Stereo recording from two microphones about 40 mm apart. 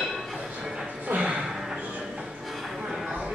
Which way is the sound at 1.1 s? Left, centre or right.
Right.